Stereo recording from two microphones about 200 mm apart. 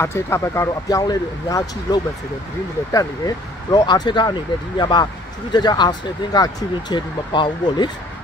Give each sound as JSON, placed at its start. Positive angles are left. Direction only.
{"t": 0.0, "sound": "speech", "side_deg": 15}